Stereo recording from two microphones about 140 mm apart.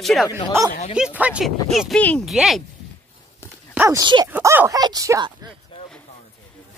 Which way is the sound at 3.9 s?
30° right (ahead or behind).